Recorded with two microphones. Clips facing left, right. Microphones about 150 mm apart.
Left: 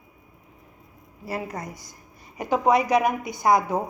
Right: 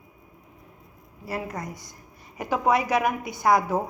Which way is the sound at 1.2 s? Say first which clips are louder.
Left 1 dB; 25° left (ahead or behind).